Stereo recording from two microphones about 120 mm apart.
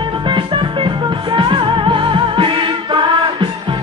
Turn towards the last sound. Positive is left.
turn(degrees=-45)  # may be behind; listen again after turning